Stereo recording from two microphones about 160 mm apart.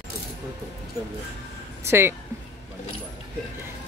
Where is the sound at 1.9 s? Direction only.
15° right (ahead or behind).